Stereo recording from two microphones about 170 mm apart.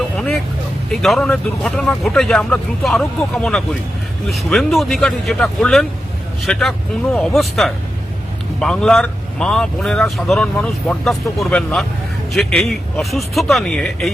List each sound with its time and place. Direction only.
0.2 s a man's voice: 5° left (ahead or behind)